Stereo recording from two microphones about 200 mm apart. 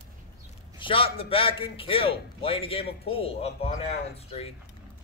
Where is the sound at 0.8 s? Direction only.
30° left (ahead or behind).